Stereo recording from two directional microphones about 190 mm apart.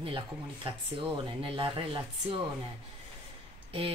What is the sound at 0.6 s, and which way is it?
Speech, 30° right (ahead or behind).